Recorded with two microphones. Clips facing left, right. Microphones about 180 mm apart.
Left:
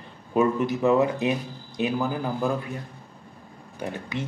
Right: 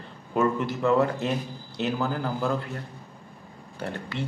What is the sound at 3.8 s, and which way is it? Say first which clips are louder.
Speech: left 1 dB; 15° left (ahead or behind).